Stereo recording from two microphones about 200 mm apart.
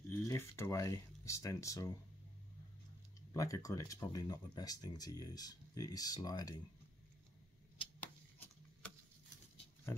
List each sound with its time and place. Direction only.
0.1 s speech: 10° left (ahead or behind)
3.2 s speech: 15° left (ahead or behind)